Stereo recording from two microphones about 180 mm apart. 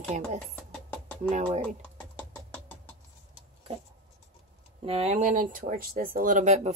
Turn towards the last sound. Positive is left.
turn(degrees=-40)  # may be behind; listen again after turning